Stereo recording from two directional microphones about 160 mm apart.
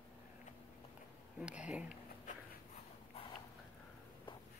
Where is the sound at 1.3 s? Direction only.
5° right (ahead or behind).